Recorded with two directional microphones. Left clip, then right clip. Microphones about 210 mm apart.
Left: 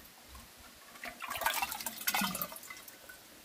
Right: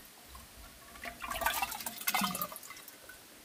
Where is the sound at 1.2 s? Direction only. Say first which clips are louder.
Right 1 dB; 5° right (ahead or behind).